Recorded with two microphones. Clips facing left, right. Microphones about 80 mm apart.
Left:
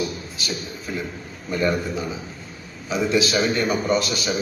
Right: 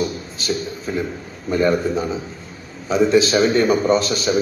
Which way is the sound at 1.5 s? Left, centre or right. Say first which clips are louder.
Right 5 dB; right.